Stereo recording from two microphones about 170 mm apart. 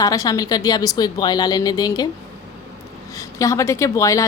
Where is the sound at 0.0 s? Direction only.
20° left (ahead or behind).